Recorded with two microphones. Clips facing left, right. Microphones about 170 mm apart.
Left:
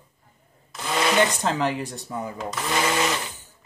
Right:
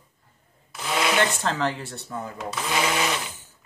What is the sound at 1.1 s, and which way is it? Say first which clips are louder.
Speech: left 2 dB; 15° left (ahead or behind).